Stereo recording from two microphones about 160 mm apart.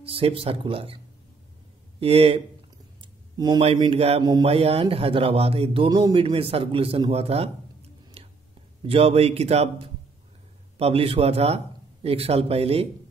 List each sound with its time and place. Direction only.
0.0 s a man's voice: 35° right (ahead or behind)
2.0 s a man's voice: 40° right (ahead or behind)
3.0 s a sound: 30° right (ahead or behind)
3.6 s a man's voice: 35° right (ahead or behind)
4.2 s speech: 25° right (ahead or behind)
4.5 s a man's voice: 40° right (ahead or behind)
10.8 s a man's voice: 35° right (ahead or behind)